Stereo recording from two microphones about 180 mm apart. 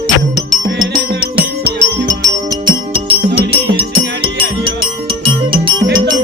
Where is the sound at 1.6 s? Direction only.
15° right (ahead or behind).